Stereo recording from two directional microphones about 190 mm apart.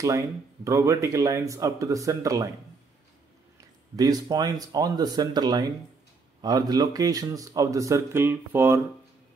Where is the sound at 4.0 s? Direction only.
20° right (ahead or behind).